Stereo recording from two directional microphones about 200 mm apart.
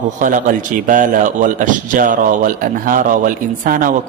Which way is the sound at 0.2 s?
40° right (ahead or behind).